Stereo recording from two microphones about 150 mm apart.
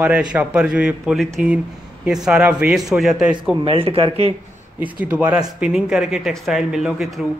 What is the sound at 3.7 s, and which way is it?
Speech, 40° right (ahead or behind).